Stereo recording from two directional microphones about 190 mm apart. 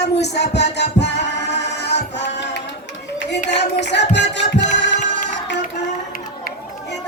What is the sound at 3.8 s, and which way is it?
Music, 65° left (ahead or behind).